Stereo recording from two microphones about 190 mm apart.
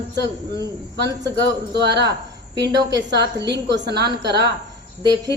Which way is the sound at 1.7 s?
60° right (ahead or behind).